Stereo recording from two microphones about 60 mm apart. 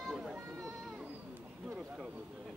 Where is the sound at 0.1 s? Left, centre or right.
Centre.